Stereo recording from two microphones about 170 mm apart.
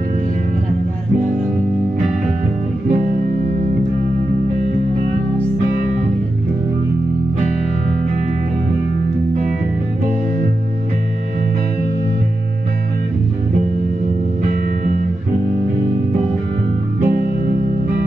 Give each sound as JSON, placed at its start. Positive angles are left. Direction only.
{"t": 17.0, "sound": "music", "side_deg": -60}